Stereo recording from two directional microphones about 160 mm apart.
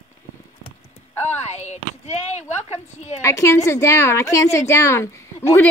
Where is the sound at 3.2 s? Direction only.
20° left (ahead or behind).